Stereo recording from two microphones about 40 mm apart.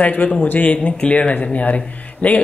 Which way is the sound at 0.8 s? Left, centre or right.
Left.